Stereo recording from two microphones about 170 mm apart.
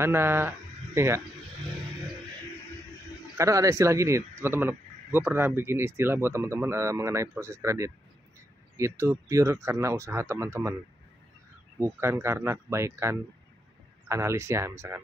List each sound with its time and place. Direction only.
0.0 s speech: 15° right (ahead or behind)
3.3 s speech: 20° right (ahead or behind)
11.8 s speech: 15° right (ahead or behind)